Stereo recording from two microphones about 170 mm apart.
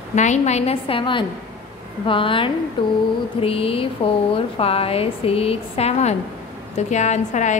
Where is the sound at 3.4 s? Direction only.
35° left (ahead or behind).